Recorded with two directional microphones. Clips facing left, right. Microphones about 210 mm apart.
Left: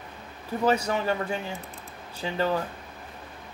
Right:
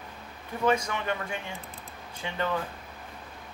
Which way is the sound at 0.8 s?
35° left (ahead or behind).